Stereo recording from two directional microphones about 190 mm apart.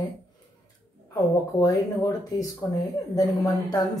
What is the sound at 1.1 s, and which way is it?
Speech, 15° left (ahead or behind).